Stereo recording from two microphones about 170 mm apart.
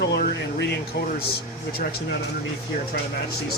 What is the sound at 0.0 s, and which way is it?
Air conditioning, 85° left.